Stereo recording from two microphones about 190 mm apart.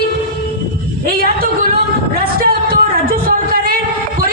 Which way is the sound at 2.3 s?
50° right (ahead or behind).